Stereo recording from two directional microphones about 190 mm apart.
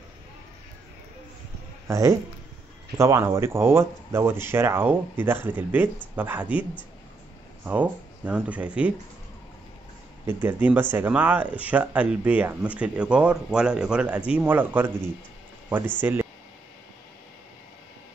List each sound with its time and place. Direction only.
1.9 s speech: 15° right (ahead or behind)
7.6 s speech: 5° right (ahead or behind)
10.2 s speech: 10° right (ahead or behind)